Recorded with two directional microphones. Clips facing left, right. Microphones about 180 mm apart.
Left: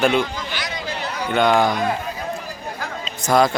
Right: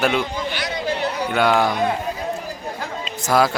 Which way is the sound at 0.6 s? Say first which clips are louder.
Right 4 dB; 60° right (ahead or behind).